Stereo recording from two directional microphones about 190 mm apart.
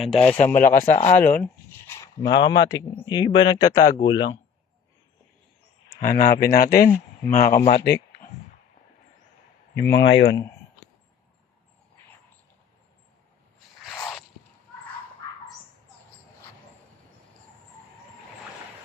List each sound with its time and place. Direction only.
0.0 s speech: 5° left (ahead or behind)
0.5 s speech: 45° left (ahead or behind)
1.1 s speech: 10° left (ahead or behind)
2.0 s speech: 20° left (ahead or behind)
5.9 s speech: 45° left (ahead or behind)
6.8 s speech: 15° left (ahead or behind)
7.3 s speech: 50° left (ahead or behind)
9.7 s speech: 15° left (ahead or behind)
10.0 s speech: 70° left (ahead or behind)